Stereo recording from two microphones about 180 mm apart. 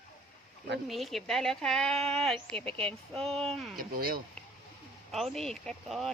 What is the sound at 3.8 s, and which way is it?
Speech, 55° right (ahead or behind).